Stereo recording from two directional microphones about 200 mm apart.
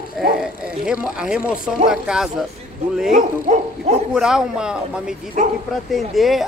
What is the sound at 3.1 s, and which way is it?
Speech, 40° right (ahead or behind).